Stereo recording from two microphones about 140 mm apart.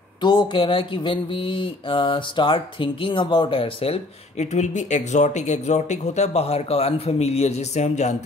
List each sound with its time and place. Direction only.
0.2 s speech: 30° left (ahead or behind); by 8.1 s 55° left (ahead or behind)